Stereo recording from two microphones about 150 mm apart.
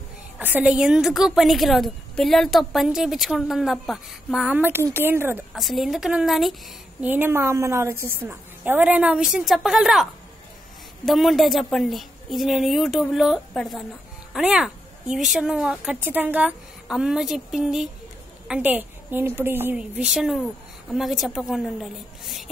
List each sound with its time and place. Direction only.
0.4 s a woman's voice: 10° right (ahead or behind)
5.5 s a woman's voice: centre (ahead or behind)
7.0 s a woman's voice: 10° right (ahead or behind)
11.1 s a woman's voice: centre (ahead or behind)